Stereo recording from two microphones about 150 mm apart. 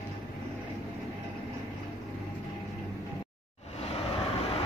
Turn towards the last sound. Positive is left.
turn(degrees=40)  # may be behind; listen again after turning